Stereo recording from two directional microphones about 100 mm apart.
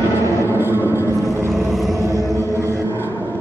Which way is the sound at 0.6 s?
25° right (ahead or behind).